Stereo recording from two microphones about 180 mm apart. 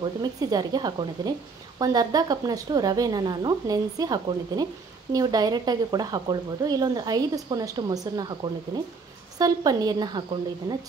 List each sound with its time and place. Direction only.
0.0 s speech: 20° right (ahead or behind)